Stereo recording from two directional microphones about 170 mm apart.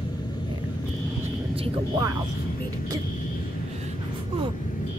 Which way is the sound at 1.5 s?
35° right (ahead or behind).